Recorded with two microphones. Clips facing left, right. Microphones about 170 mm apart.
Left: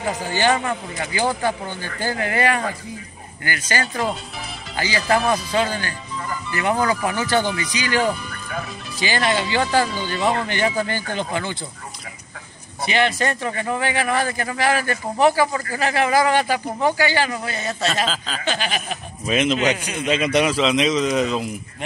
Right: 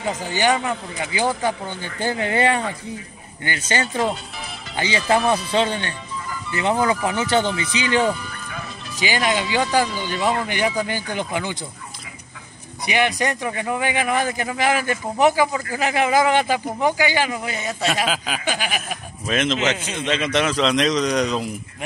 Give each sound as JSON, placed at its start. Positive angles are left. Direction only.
{"t": 0.4, "sound": "a man's voice", "side_deg": -15}
{"t": 12.8, "sound": "a man's voice", "side_deg": -15}
{"t": 19.2, "sound": "a man's voice", "side_deg": 10}